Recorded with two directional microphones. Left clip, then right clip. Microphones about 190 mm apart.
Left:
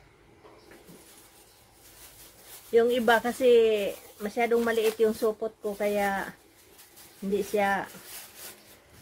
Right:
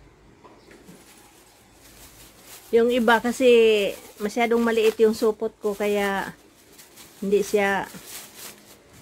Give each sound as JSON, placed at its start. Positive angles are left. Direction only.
{"t": 2.7, "sound": "speech", "side_deg": -50}
{"t": 7.5, "sound": "speech", "side_deg": -55}